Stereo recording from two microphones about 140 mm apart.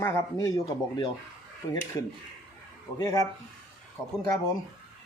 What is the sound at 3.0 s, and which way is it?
Speech, 25° left (ahead or behind).